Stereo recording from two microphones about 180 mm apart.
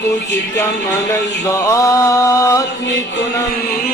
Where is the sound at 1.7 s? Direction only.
20° left (ahead or behind).